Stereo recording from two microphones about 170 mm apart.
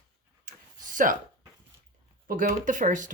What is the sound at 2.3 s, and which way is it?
Speech, 50° right (ahead or behind).